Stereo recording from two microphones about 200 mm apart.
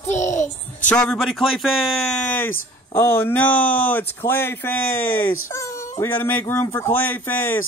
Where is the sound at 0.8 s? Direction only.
5° left (ahead or behind).